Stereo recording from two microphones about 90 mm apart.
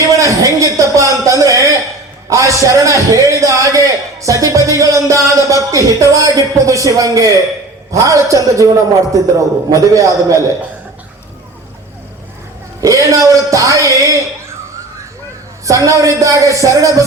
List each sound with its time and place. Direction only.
0.2 s a sound: 35° right (ahead or behind)
2.3 s a man's voice: 35° right (ahead or behind)
12.8 s a man's voice: 35° right (ahead or behind)
15.6 s a man's voice: 35° right (ahead or behind)